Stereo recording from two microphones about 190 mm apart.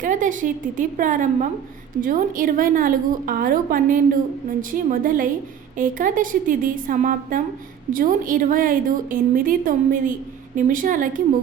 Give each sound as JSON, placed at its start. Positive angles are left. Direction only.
{"t": 0.0, "sound": "a woman's voice", "side_deg": -40}